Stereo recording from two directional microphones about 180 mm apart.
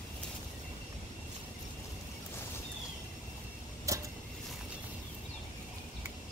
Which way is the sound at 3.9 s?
15° right (ahead or behind).